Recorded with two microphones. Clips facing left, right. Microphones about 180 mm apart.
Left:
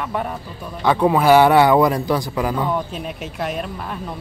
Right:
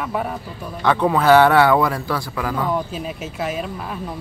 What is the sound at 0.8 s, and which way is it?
A man's voice, 10° left (ahead or behind).